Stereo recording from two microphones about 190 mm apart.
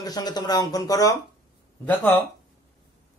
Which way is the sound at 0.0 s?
20° left (ahead or behind).